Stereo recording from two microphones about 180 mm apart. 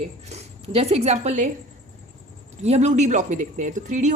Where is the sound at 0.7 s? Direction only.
35° right (ahead or behind).